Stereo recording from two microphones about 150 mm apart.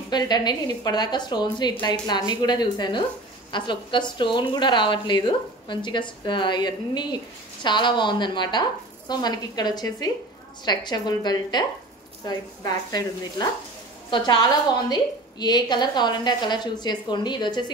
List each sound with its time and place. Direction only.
0.1 s a woman's voice: 30° left (ahead or behind)